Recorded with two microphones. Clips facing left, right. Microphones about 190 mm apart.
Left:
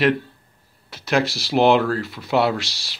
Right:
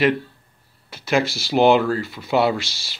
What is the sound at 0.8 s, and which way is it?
Speech, centre (ahead or behind).